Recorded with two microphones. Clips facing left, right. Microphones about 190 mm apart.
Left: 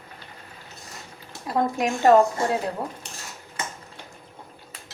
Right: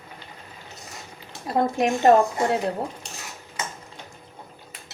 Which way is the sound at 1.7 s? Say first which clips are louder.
Even; 25° right (ahead or behind).